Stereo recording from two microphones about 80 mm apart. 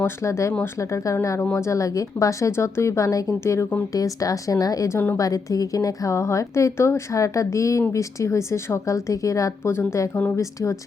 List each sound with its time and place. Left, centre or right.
0.0 s a woman's voice: left
3.9 s a woman's voice: left